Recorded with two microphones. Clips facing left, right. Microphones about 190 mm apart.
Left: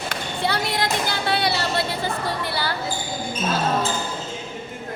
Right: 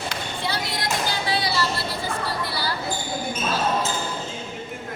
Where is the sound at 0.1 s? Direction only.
60° left (ahead or behind).